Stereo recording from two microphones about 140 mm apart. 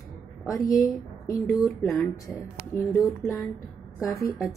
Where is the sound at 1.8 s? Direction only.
15° left (ahead or behind).